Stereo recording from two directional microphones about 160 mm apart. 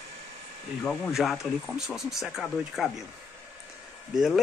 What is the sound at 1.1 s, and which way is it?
Speech, centre (ahead or behind).